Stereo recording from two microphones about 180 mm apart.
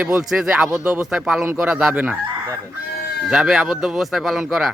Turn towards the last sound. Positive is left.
turn(degrees=0)  # may be behind; listen again after turning